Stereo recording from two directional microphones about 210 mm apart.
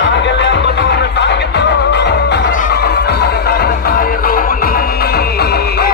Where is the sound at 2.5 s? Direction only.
40° left (ahead or behind).